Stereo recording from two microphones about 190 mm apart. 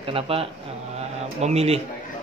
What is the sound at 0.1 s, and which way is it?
A man's voice, 30° right (ahead or behind).